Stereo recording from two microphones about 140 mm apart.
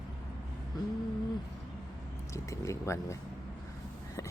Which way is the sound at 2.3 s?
20° left (ahead or behind).